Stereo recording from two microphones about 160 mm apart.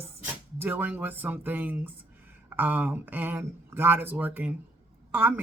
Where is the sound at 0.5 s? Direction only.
10° right (ahead or behind).